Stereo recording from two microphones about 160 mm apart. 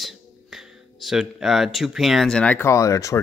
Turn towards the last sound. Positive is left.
turn(degrees=20)  # may be behind; listen again after turning